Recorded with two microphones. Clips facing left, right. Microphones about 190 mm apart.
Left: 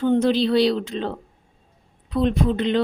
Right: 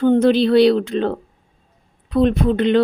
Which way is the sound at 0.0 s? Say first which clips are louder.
Right 5 dB; 60° right (ahead or behind).